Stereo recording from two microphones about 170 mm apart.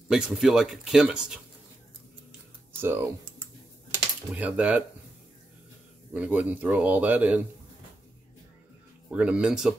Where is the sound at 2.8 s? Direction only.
15° right (ahead or behind).